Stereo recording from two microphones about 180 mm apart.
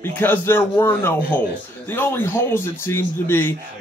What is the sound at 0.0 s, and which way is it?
A man's voice, 10° left (ahead or behind).